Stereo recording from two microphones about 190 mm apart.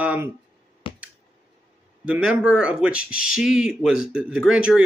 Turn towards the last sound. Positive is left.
turn(degrees=-5)  # may be behind; listen again after turning